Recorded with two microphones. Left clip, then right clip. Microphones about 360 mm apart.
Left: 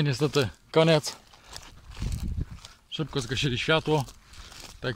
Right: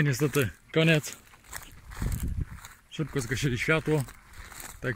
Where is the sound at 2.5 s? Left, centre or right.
Centre.